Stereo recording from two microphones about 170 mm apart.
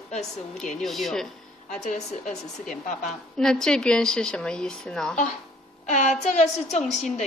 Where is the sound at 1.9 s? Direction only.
45° left (ahead or behind).